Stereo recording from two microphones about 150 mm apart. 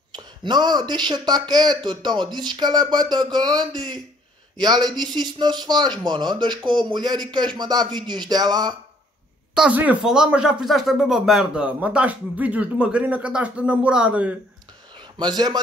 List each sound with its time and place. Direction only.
0.1 s speech: 30° right (ahead or behind)
9.6 s speech: 10° right (ahead or behind)
15.1 s speech: 30° right (ahead or behind)